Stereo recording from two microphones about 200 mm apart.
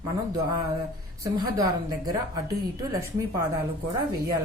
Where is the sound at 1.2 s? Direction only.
20° right (ahead or behind).